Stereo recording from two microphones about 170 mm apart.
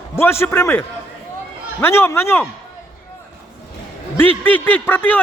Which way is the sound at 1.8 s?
15° left (ahead or behind).